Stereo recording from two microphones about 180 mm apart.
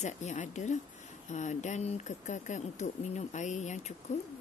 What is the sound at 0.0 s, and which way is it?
Speech, 40° left (ahead or behind).